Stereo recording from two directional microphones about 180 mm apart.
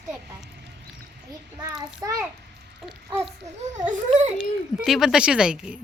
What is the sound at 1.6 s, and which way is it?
Child singing, 20° right (ahead or behind).